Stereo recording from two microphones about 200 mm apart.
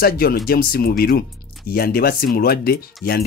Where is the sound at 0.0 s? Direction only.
50° left (ahead or behind).